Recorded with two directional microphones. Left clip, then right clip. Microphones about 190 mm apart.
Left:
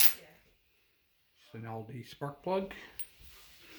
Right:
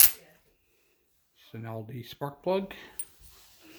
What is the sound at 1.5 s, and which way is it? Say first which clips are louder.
Speech: right 3 dB; 45° right (ahead or behind).